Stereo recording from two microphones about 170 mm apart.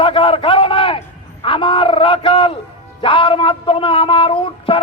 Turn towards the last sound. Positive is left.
turn(degrees=30)  # may be behind; listen again after turning